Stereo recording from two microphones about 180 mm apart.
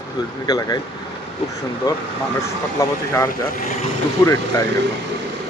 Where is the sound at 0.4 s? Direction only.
20° left (ahead or behind).